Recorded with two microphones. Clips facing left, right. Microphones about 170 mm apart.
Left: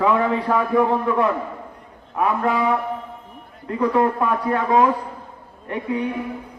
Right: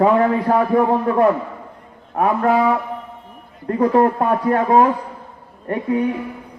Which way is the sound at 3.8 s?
50° right (ahead or behind).